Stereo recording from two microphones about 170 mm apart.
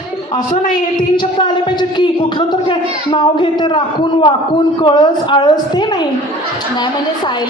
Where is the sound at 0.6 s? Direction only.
50° left (ahead or behind).